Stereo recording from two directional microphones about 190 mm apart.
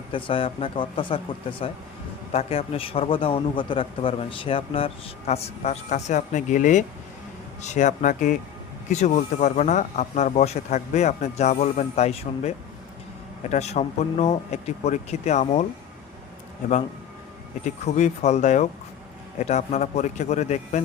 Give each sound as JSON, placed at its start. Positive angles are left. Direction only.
{"t": 0.1, "sound": "a man's voice", "side_deg": 25}
{"t": 17.6, "sound": "a man's voice", "side_deg": 40}